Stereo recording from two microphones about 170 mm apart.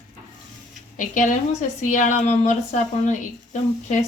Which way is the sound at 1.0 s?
50° left (ahead or behind).